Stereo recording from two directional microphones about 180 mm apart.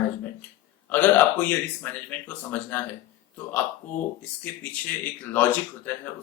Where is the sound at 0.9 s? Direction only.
10° left (ahead or behind).